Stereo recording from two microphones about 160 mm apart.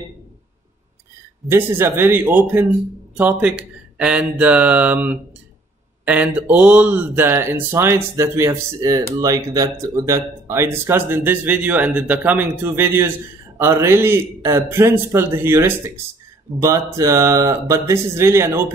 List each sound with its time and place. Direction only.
1.5 s speech: 15° right (ahead or behind)